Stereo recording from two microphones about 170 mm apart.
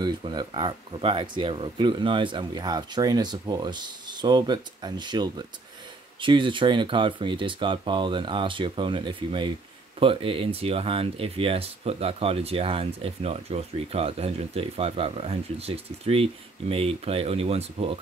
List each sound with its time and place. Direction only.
0.0 s speech: 25° right (ahead or behind)